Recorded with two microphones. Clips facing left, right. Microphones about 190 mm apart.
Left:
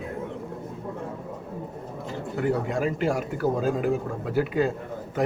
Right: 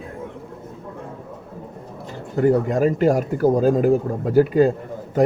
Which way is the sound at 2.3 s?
40° right (ahead or behind).